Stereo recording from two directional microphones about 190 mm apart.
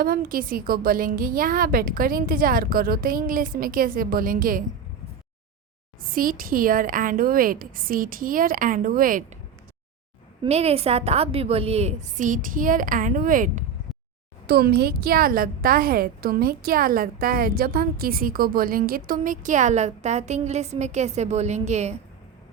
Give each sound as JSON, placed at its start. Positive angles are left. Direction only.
{"t": 0.0, "sound": "a woman's voice", "side_deg": -50}
{"t": 6.0, "sound": "a woman's voice", "side_deg": -50}
{"t": 10.4, "sound": "a woman's voice", "side_deg": -35}
{"t": 14.4, "sound": "a woman's voice", "side_deg": -55}